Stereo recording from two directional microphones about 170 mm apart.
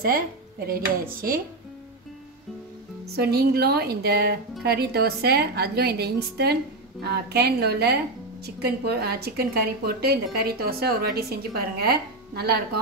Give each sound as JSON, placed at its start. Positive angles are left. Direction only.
{"t": 0.7, "sound": "speech", "side_deg": -60}
{"t": 3.2, "sound": "a woman's voice", "side_deg": -70}